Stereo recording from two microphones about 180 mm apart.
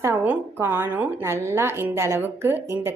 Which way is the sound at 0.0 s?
10° right (ahead or behind).